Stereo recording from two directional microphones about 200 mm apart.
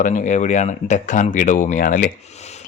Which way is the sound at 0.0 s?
40° left (ahead or behind).